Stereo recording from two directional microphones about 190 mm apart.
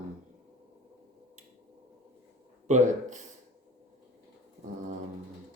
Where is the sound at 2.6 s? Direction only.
40° right (ahead or behind).